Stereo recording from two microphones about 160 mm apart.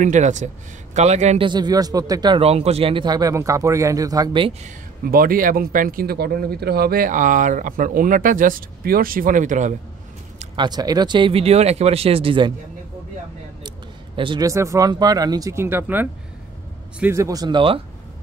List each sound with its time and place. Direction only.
0.0 s a man's voice: 50° right (ahead or behind)
1.4 s speech: 25° right (ahead or behind)
2.4 s speech: 40° right (ahead or behind)
4.6 s a man's voice: 65° right (ahead or behind)
10.5 s speech: 25° right (ahead or behind)
13.7 s a sound: 30° right (ahead or behind)
14.5 s speech: 20° right (ahead or behind)